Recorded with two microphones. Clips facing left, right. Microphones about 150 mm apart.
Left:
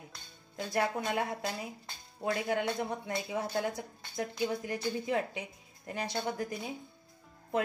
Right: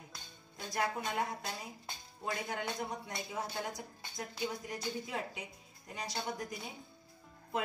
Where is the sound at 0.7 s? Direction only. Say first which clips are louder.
Left 4 dB; 75° left (ahead or behind).